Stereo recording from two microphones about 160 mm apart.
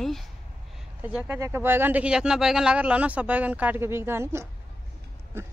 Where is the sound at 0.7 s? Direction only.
10° right (ahead or behind).